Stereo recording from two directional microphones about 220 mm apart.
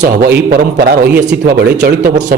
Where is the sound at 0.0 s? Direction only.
45° right (ahead or behind).